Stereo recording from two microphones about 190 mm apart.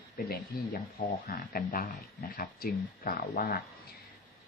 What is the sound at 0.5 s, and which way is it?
Speech, 50° left (ahead or behind).